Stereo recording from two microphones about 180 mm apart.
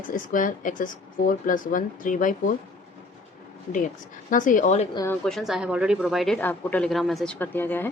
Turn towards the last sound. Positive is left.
turn(degrees=10)  # may be behind; listen again after turning